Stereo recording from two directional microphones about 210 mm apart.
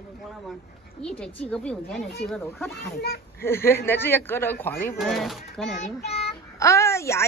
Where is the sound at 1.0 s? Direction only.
5° left (ahead or behind).